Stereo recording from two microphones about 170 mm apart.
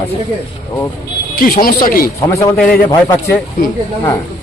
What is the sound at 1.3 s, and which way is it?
Speech, 60° left (ahead or behind).